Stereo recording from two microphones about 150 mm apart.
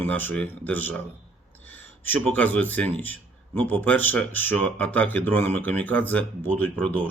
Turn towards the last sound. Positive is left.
turn(degrees=10)  # may be behind; listen again after turning